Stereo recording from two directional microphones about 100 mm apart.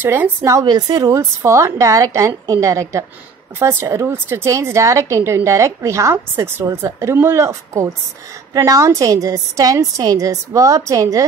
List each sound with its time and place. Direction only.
0.0 s speech: 20° right (ahead or behind)
0.5 s a woman's voice: 40° right (ahead or behind)